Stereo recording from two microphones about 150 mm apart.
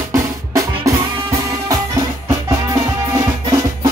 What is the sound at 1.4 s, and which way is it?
Music, 20° right (ahead or behind).